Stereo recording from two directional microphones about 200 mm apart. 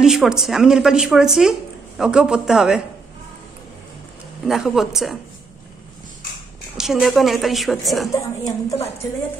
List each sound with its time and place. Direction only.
0.0 s speech: centre (ahead or behind)
4.5 s speech: centre (ahead or behind)
6.8 s speech: centre (ahead or behind)
8.1 s a woman's voice: 15° left (ahead or behind)